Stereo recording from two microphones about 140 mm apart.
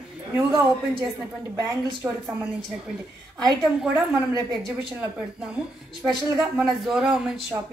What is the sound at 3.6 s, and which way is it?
Speech, 5° right (ahead or behind).